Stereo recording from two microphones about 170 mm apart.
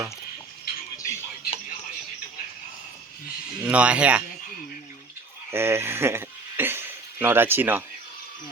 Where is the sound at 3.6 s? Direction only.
5° right (ahead or behind).